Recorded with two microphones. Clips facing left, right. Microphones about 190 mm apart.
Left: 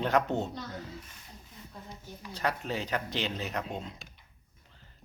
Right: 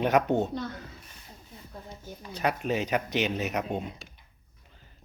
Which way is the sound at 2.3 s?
15° right (ahead or behind).